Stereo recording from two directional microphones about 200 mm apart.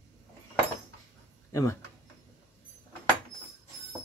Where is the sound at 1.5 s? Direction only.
15° left (ahead or behind).